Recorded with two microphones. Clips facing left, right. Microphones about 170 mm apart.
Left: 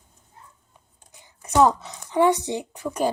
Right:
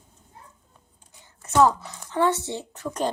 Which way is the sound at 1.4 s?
15° left (ahead or behind).